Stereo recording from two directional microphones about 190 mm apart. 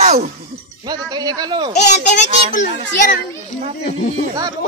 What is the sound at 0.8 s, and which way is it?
Speech, 20° right (ahead or behind).